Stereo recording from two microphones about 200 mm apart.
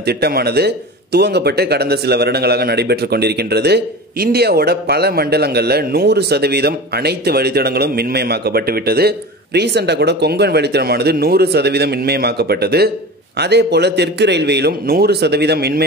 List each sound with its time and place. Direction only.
0.0 s a man's voice: 55° right (ahead or behind)